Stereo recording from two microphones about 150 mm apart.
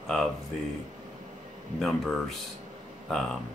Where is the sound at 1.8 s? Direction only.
Centre (ahead or behind).